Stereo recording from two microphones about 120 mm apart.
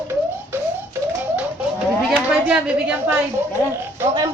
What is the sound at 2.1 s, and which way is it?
A woman's voice, 10° right (ahead or behind).